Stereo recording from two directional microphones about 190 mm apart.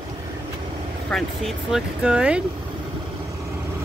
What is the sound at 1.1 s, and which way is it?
Speech, centre (ahead or behind).